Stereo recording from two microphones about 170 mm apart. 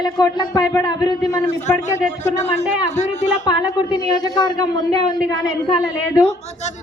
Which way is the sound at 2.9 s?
45° left (ahead or behind).